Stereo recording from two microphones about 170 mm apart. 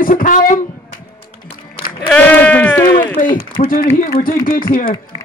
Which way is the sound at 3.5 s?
55° left (ahead or behind).